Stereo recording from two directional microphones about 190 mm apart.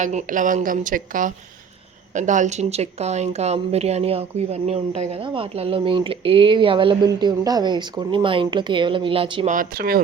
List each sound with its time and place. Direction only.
0.0 s a woman's voice: 40° right (ahead or behind)
9.5 s a woman's voice: 50° right (ahead or behind)